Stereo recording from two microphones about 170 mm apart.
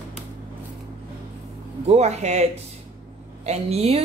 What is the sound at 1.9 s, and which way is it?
A woman's voice, 40° right (ahead or behind).